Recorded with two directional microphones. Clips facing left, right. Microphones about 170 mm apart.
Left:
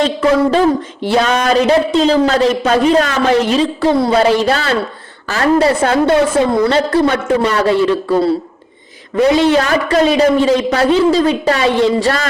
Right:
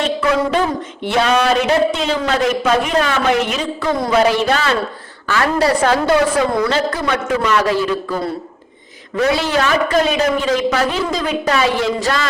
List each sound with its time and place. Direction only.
0.0 s a woman's voice: 35° left (ahead or behind)
9.2 s a man's voice: 30° left (ahead or behind)